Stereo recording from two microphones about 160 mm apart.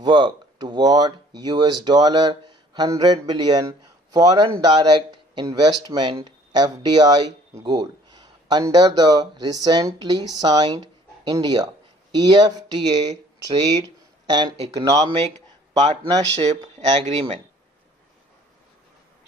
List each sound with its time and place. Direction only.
0.0 s speech: 30° right (ahead or behind)
14.6 s speech: 40° right (ahead or behind)
14.8 s speech: 25° right (ahead or behind)
16.3 s speech: 45° right (ahead or behind)